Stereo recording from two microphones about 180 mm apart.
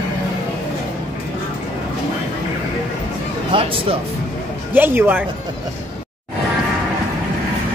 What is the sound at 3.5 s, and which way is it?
Music, 30° right (ahead or behind).